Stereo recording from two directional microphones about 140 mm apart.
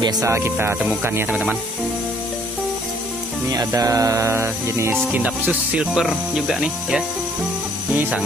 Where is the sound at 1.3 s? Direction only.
5° right (ahead or behind).